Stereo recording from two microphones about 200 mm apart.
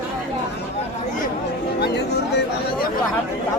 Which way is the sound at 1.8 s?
55° left (ahead or behind).